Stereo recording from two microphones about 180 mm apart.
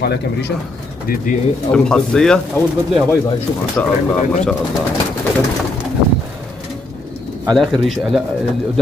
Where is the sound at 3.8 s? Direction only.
10° left (ahead or behind).